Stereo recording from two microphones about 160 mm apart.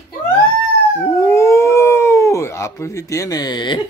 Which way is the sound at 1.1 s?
20° left (ahead or behind).